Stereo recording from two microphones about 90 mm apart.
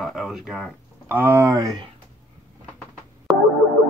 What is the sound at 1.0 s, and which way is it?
Speech, 20° right (ahead or behind).